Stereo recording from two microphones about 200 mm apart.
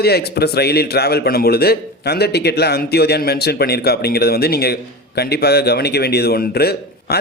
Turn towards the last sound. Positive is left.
turn(degrees=50)  # may be behind; listen again after turning